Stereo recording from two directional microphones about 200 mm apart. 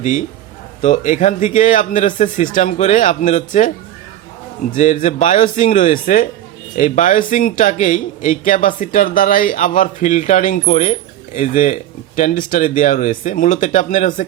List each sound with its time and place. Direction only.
0.0 s a man's voice: 40° left (ahead or behind)
4.7 s a man's voice: 40° left (ahead or behind)